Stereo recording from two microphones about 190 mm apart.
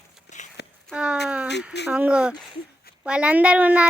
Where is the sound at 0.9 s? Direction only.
5° right (ahead or behind).